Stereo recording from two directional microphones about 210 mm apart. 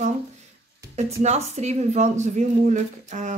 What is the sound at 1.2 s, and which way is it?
Speech, 30° right (ahead or behind).